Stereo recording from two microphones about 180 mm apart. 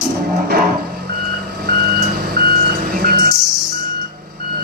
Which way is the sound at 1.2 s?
60° right (ahead or behind).